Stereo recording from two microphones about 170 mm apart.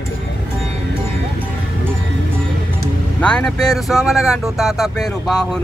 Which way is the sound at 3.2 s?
5° left (ahead or behind).